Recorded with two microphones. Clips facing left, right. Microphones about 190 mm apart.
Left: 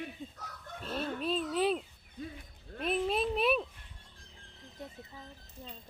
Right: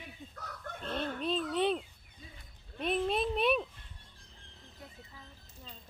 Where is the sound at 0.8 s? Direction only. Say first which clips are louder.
Even; 5° left (ahead or behind).